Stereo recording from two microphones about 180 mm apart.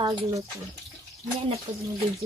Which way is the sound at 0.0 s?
20° right (ahead or behind).